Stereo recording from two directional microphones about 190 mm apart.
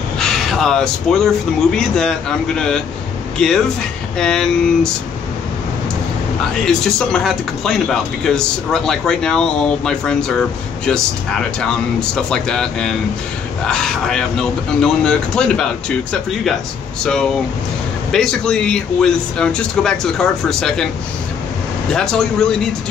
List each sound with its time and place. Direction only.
0.2 s speech: centre (ahead or behind)
6.6 s speech: 5° left (ahead or behind)
21.9 s speech: 5° left (ahead or behind)